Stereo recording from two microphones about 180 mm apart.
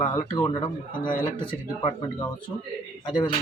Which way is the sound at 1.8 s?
30° left (ahead or behind).